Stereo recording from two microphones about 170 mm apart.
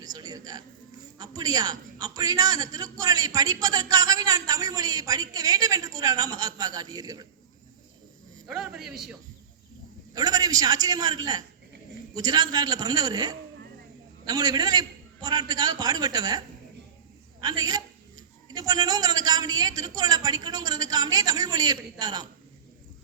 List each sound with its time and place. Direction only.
0.0 s a man's voice: 25° right (ahead or behind)
8.4 s a man's voice: centre (ahead or behind)
10.2 s a man's voice: 20° right (ahead or behind)
17.4 s a woman's voice: 25° right (ahead or behind)